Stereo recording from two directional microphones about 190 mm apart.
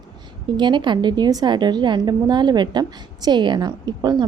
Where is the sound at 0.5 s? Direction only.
25° right (ahead or behind).